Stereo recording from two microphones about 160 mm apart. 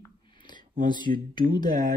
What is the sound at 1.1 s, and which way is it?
Speech, 60° right (ahead or behind).